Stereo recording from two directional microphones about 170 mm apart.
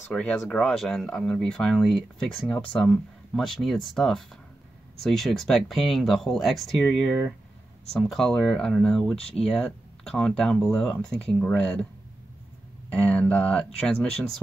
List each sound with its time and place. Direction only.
0.1 s speech: 5° left (ahead or behind)
12.9 s speech: 5° left (ahead or behind)